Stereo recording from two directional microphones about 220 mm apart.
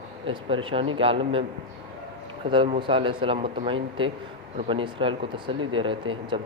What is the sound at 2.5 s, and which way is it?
Speech, 20° right (ahead or behind).